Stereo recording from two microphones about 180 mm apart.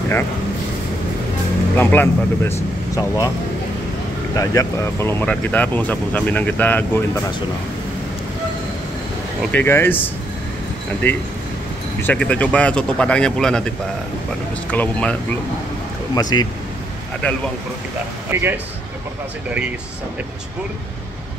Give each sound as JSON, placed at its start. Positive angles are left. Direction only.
{"t": 1.8, "sound": "speech", "side_deg": 10}
{"t": 4.4, "sound": "speech", "side_deg": 15}
{"t": 9.5, "sound": "speech", "side_deg": 10}
{"t": 16.2, "sound": "speech", "side_deg": 20}
{"t": 18.3, "sound": "speech", "side_deg": -10}